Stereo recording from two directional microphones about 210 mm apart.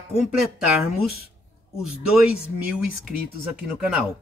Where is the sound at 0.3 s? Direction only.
5° right (ahead or behind).